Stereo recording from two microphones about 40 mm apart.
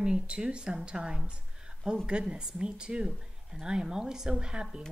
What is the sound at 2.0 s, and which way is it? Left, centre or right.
A woman's voice, right.